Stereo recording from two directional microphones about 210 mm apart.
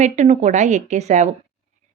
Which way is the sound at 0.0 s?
35° right (ahead or behind).